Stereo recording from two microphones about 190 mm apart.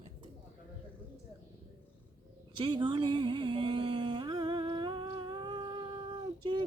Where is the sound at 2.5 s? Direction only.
25° right (ahead or behind).